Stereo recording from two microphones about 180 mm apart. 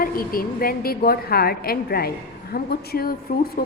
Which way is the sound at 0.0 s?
55° left (ahead or behind).